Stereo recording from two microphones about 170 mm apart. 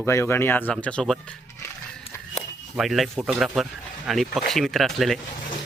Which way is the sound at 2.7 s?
Centre (ahead or behind).